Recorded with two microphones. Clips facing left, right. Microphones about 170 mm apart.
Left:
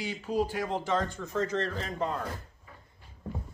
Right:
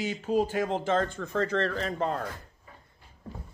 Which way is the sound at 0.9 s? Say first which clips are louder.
Right 3 dB; 55° right (ahead or behind).